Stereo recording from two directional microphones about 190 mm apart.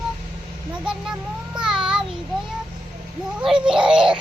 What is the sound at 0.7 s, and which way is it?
Speech, 5° right (ahead or behind).